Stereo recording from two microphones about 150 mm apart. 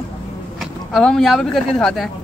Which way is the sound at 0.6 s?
Centre (ahead or behind).